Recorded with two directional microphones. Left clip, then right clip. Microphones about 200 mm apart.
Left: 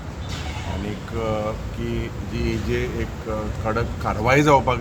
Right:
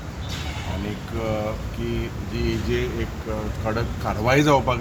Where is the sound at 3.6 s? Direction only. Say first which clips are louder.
Left 2 dB; 25° left (ahead or behind).